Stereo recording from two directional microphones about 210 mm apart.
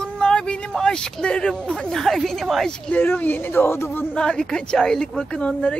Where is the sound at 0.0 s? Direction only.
5° left (ahead or behind).